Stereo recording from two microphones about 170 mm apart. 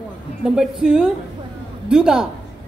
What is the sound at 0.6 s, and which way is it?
Speech, 5° right (ahead or behind).